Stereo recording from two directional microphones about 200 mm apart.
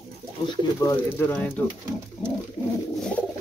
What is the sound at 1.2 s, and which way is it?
Speech, 10° left (ahead or behind).